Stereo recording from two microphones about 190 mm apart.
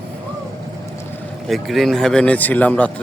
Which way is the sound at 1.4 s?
Centre (ahead or behind).